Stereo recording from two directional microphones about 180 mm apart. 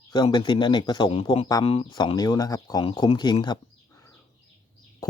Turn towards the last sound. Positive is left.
turn(degrees=25)  # may be behind; listen again after turning